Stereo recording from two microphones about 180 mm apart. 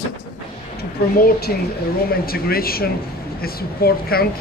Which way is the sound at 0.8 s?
60° left (ahead or behind).